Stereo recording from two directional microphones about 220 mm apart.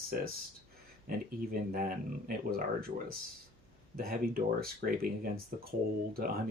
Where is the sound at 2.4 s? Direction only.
40° right (ahead or behind).